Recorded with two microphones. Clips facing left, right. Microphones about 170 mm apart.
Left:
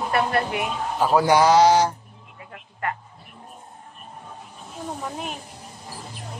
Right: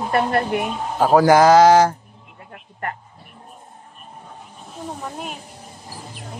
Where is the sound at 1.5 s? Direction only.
90° right.